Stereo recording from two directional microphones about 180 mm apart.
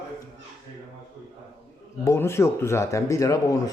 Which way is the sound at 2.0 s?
15° left (ahead or behind).